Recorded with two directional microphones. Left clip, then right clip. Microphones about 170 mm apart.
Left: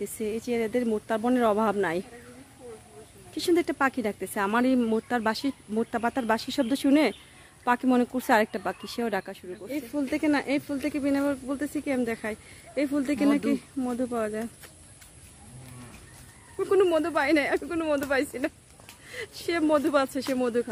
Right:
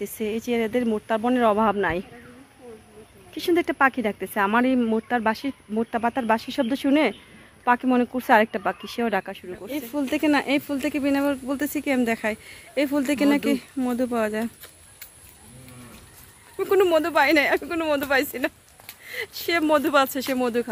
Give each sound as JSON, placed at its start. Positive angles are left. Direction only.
{"t": 0.0, "sound": "speech", "side_deg": 0}
{"t": 3.3, "sound": "speech", "side_deg": 5}
{"t": 9.7, "sound": "speech", "side_deg": -20}
{"t": 16.5, "sound": "speech", "side_deg": 0}